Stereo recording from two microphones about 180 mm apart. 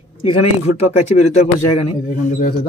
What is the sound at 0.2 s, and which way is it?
Speech, 30° left (ahead or behind).